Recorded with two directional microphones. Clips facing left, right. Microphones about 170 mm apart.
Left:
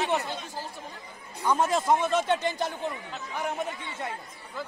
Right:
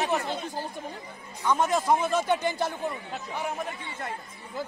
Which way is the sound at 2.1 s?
25° left (ahead or behind).